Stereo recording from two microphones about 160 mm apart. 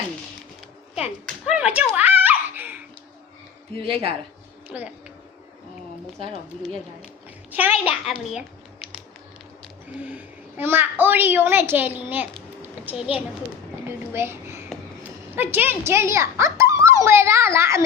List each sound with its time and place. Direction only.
1.5 s speech: 10° right (ahead or behind)
2.2 s giggle: 10° right (ahead or behind)
3.8 s speech: 35° right (ahead or behind)
4.7 s speech: 10° right (ahead or behind)
7.9 s a child's voice: 5° right (ahead or behind)
10.0 s a child's voice: 10° right (ahead or behind)
12.6 s a sound: 10° right (ahead or behind)
13.8 s a child's voice: 15° right (ahead or behind)